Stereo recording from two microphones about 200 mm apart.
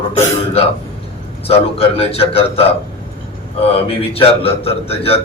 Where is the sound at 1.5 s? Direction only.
30° left (ahead or behind).